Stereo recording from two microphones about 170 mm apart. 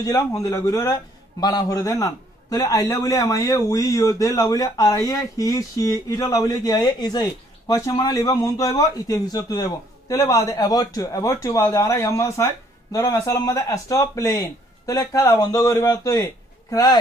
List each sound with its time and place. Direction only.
0.0 s a man's voice: 20° left (ahead or behind)